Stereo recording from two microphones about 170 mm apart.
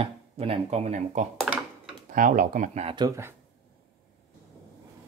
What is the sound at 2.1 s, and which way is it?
Speech, 55° right (ahead or behind).